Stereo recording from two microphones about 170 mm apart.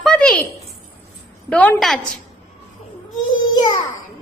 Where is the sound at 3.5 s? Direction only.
25° left (ahead or behind).